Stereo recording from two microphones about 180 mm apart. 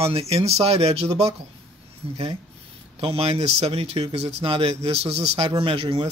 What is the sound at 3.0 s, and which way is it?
Speech, 30° right (ahead or behind).